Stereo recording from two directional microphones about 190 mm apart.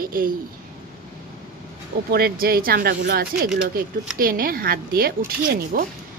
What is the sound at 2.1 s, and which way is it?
A woman's voice, 50° right (ahead or behind).